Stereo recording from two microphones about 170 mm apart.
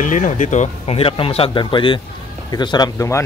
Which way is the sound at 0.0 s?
50° left (ahead or behind).